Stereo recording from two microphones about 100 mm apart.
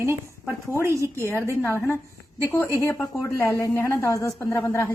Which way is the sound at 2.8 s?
30° left (ahead or behind).